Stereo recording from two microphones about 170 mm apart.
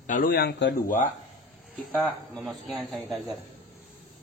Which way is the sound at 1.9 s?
5° left (ahead or behind).